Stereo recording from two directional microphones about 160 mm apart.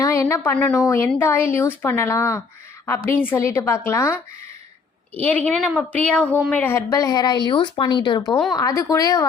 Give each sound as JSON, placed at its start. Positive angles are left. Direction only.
{"t": 0.0, "sound": "a woman's voice", "side_deg": 20}
{"t": 5.2, "sound": "speech", "side_deg": 10}